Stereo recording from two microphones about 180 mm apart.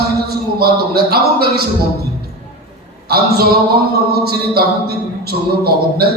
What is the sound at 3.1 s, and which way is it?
A man's voice, 60° right (ahead or behind).